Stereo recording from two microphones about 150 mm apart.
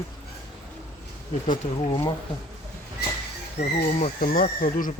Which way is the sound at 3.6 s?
50° left (ahead or behind).